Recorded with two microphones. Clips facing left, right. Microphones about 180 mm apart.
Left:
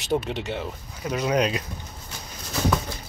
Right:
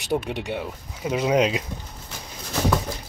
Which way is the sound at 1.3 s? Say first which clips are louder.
Right 3 dB; 20° right (ahead or behind).